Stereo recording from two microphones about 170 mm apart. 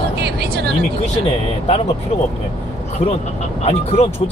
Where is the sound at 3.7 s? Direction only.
35° left (ahead or behind).